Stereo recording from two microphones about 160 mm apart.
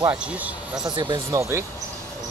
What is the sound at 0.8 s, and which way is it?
Speech, 30° right (ahead or behind).